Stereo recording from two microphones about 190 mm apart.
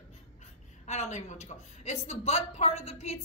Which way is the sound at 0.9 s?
35° left (ahead or behind).